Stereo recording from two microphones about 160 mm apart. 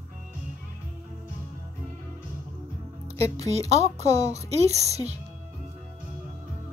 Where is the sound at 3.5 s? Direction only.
40° right (ahead or behind).